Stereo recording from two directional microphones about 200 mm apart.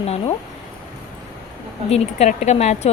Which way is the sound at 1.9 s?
30° left (ahead or behind).